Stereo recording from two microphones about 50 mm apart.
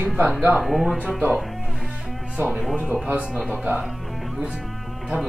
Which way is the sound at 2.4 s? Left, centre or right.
Right.